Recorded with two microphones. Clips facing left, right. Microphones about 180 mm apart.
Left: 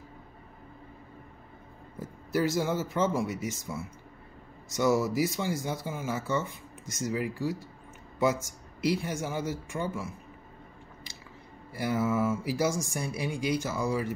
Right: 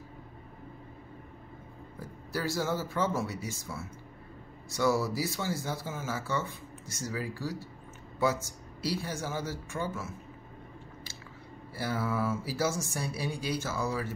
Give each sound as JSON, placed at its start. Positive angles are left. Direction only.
{"t": 2.0, "sound": "speech", "side_deg": 20}
{"t": 11.7, "sound": "speech", "side_deg": 15}